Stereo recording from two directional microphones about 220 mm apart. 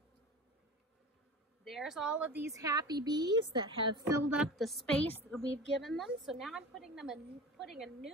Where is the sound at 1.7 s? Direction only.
Centre (ahead or behind); by 4.0 s 20° right (ahead or behind).